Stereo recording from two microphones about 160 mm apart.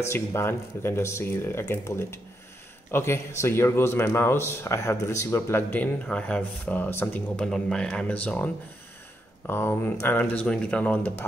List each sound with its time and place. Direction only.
0.0 s speech: 15° left (ahead or behind)
9.5 s speech: 15° left (ahead or behind)